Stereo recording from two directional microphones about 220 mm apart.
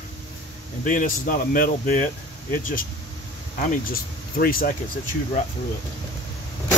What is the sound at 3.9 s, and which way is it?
Speech, 40° left (ahead or behind).